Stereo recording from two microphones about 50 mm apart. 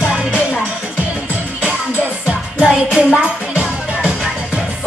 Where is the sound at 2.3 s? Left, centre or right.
Right.